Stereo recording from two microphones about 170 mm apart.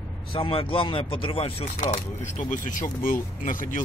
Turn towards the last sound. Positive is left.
turn(degrees=50)  # may be behind; listen again after turning